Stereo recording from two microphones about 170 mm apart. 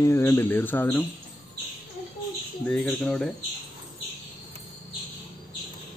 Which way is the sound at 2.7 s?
5° left (ahead or behind).